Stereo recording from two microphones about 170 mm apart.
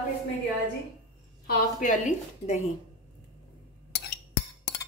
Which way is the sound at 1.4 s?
50° left (ahead or behind).